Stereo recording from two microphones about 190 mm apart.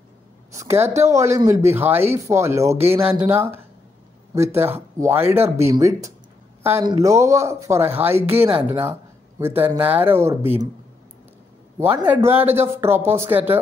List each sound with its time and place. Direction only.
0.5 s a woman's voice: 15° right (ahead or behind)
5.0 s speech: 10° right (ahead or behind)
12.1 s speech: 10° right (ahead or behind)